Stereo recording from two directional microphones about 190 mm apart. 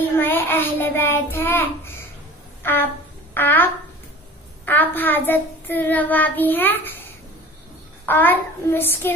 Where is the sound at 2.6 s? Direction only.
10° left (ahead or behind).